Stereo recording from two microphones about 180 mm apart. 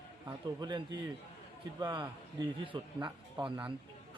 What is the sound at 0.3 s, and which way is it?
A man's voice, 20° right (ahead or behind).